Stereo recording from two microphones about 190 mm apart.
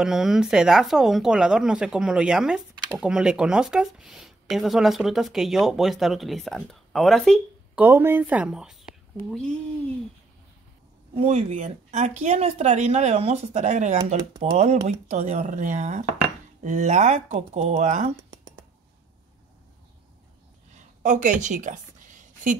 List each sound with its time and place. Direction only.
0.0 s speech: centre (ahead or behind)
7.8 s a woman's voice: 10° right (ahead or behind)
11.1 s speech: 35° right (ahead or behind)
18.3 s a sound: 20° right (ahead or behind)
21.0 s a woman's voice: 40° right (ahead or behind)